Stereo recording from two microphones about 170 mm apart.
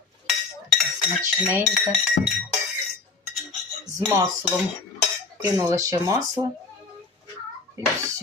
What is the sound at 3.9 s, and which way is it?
Speech, 20° right (ahead or behind).